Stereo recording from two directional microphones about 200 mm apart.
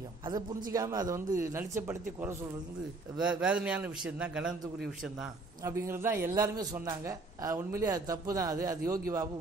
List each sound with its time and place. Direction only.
0.7 s a man's voice: 15° right (ahead or behind)
5.6 s a man's voice: 15° right (ahead or behind)